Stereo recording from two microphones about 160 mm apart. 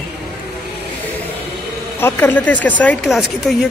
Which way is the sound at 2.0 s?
10° left (ahead or behind).